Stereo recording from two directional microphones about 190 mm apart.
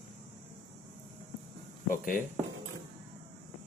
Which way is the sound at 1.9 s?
45° left (ahead or behind).